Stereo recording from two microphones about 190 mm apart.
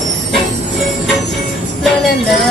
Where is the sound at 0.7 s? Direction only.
Centre (ahead or behind).